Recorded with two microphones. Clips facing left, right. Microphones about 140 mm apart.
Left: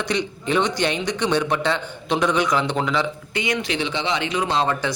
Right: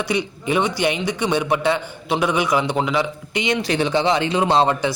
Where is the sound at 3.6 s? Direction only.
45° right (ahead or behind).